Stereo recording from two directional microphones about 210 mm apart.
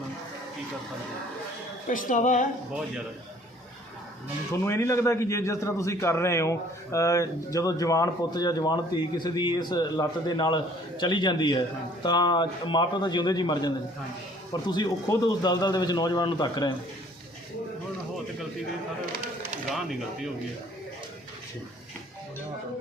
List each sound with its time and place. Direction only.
1.9 s speech: 35° left (ahead or behind)
4.5 s a man's voice: 10° left (ahead or behind)
19.7 s speech: centre (ahead or behind)